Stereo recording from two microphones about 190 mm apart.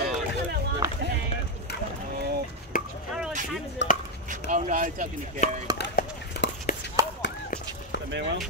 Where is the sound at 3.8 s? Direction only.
70° left (ahead or behind).